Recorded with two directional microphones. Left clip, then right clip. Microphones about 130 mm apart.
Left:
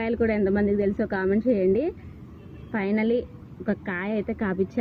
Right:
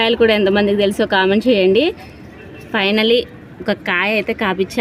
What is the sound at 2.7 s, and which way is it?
Speech, 25° right (ahead or behind).